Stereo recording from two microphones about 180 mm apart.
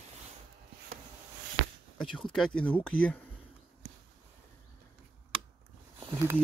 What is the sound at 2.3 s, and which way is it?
Speech, 5° left (ahead or behind).